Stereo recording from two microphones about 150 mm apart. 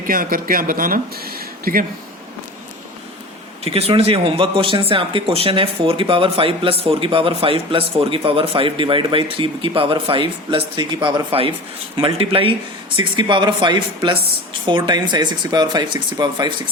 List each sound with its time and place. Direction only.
0.1 s speech: 70° right (ahead or behind)
3.6 s speech: 40° right (ahead or behind)